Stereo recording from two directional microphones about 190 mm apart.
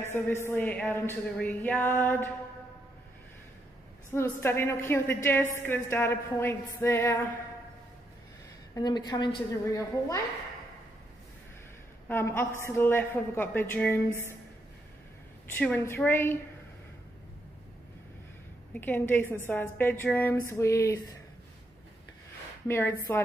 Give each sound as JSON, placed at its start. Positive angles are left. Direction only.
{"t": 0.1, "sound": "a woman's voice", "side_deg": 15}
{"t": 4.1, "sound": "a woman's voice", "side_deg": 10}
{"t": 8.7, "sound": "a woman's voice", "side_deg": 20}
{"t": 12.1, "sound": "a woman's voice", "side_deg": 15}
{"t": 15.5, "sound": "a woman's voice", "side_deg": 10}
{"t": 18.7, "sound": "a woman's voice", "side_deg": 10}
{"t": 22.7, "sound": "a woman's voice", "side_deg": 15}